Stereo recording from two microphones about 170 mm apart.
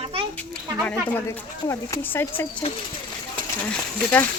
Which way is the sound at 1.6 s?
15° left (ahead or behind).